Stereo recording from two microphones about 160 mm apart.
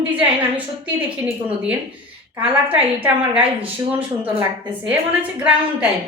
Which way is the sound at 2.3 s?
10° right (ahead or behind).